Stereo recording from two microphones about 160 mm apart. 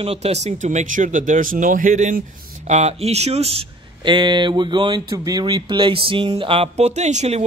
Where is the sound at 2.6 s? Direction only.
45° right (ahead or behind).